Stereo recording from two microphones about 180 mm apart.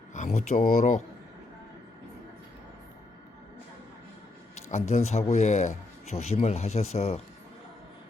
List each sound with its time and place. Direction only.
0.1 s speech: 40° left (ahead or behind)
4.7 s speech: 35° left (ahead or behind)